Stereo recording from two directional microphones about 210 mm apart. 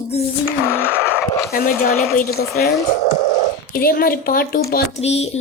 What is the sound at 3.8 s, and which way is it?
A woman's voice, 45° left (ahead or behind).